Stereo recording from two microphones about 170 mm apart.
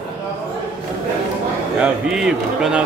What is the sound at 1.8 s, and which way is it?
A man's voice, 5° right (ahead or behind).